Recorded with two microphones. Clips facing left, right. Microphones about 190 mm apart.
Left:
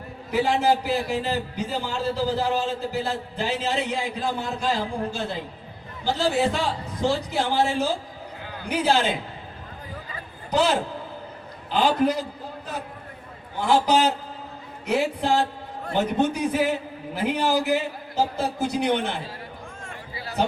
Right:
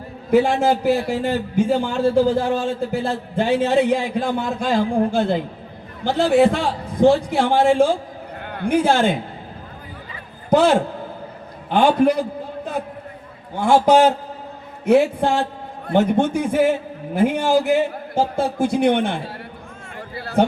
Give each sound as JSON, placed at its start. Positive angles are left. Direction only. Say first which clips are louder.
{"t": 0.3, "sound": "a man's voice", "louder": "right 5 dB", "side_deg": -50}
{"t": 10.5, "sound": "a man's voice", "louder": "right 7 dB", "side_deg": -50}
{"t": 13.7, "sound": "a man's voice", "louder": "right 6 dB", "side_deg": -50}